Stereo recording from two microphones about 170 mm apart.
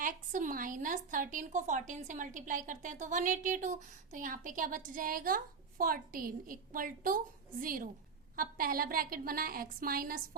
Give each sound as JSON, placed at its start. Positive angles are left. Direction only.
{"t": 0.0, "sound": "a woman's voice", "side_deg": -50}